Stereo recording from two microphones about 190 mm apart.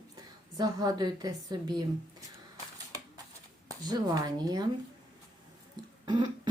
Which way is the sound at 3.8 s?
20° right (ahead or behind).